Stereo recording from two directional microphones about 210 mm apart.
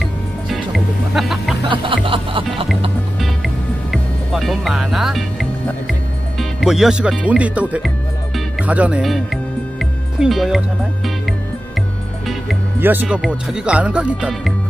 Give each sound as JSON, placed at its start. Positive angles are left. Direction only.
{"t": 0.0, "sound": "music", "side_deg": 0}
{"t": 1.7, "sound": "music", "side_deg": -25}
{"t": 3.2, "sound": "music", "side_deg": 0}
{"t": 12.3, "sound": "speech", "side_deg": -5}